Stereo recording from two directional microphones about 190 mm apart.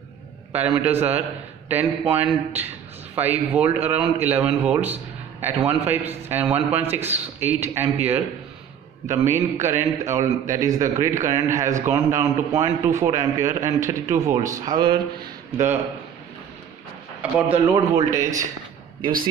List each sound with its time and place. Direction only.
0.5 s speech: 10° right (ahead or behind)
15.5 s speech: 10° right (ahead or behind)
17.2 s speech: 10° right (ahead or behind)